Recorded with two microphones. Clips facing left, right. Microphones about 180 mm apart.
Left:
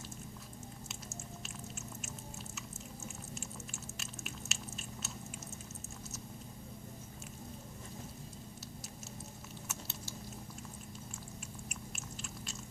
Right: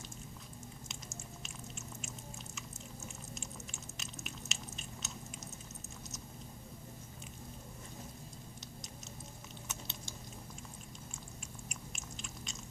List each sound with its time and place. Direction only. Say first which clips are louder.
3.4 s biting: left 2 dB; 5° left (ahead or behind)
9.6 s a sound: left 1 dB; 5° left (ahead or behind)
11.7 s biting: left 2 dB; 5° left (ahead or behind)